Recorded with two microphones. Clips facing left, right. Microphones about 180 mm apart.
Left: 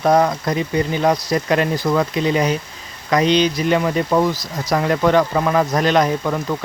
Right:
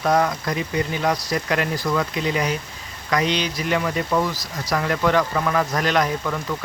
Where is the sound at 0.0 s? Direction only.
30° left (ahead or behind).